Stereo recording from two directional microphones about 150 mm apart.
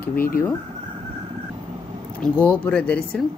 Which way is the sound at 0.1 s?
75° left (ahead or behind).